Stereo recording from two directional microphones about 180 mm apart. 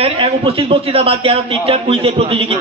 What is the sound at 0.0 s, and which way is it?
A man's voice, 30° right (ahead or behind).